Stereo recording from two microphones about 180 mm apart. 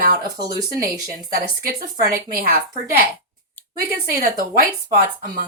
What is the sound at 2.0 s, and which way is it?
A woman's voice, 50° right (ahead or behind).